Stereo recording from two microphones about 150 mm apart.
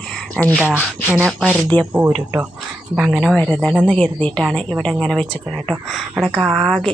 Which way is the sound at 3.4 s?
10° left (ahead or behind).